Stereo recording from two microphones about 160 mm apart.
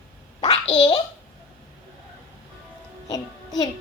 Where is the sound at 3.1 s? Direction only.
25° left (ahead or behind).